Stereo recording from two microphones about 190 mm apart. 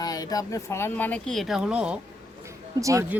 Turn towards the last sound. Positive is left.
turn(degrees=-10)  # may be behind; listen again after turning